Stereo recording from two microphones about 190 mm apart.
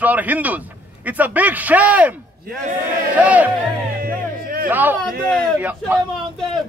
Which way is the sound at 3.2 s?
10° right (ahead or behind).